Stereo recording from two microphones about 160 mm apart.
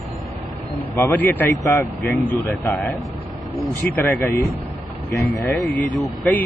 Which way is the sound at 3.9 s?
20° left (ahead or behind).